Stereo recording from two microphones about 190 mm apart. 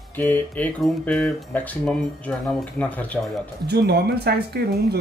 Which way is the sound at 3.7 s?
60° right (ahead or behind).